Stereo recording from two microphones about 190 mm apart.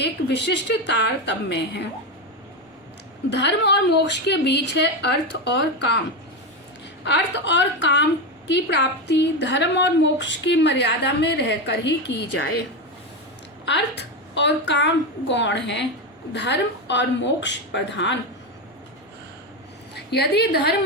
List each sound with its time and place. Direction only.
0.0 s a woman's voice: 65° left (ahead or behind)
3.3 s a woman's voice: 65° left (ahead or behind)
7.0 s a woman's voice: 65° left (ahead or behind)
13.7 s a woman's voice: 65° left (ahead or behind)
19.9 s a woman's voice: 60° left (ahead or behind)